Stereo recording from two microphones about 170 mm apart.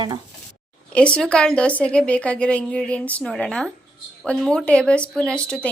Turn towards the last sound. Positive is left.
turn(degrees=5)  # may be behind; listen again after turning